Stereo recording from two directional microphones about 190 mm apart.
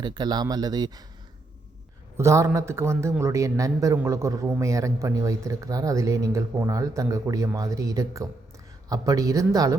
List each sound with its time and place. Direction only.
0.0 s speech: 20° right (ahead or behind)
2.1 s a man's voice: 15° right (ahead or behind)